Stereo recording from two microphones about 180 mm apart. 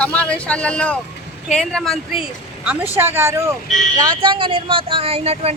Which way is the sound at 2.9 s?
15° right (ahead or behind).